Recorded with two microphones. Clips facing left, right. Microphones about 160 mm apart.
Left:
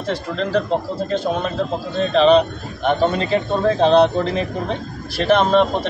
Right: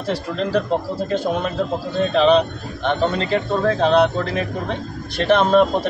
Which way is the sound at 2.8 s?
15° left (ahead or behind).